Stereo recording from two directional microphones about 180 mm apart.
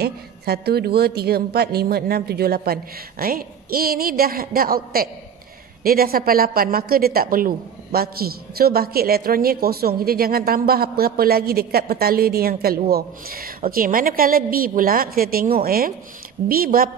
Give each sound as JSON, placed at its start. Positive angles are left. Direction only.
{"t": 0.0, "sound": "a woman's voice", "side_deg": -60}